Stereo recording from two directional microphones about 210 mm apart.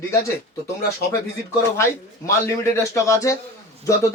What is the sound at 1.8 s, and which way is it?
A man's voice, 15° left (ahead or behind).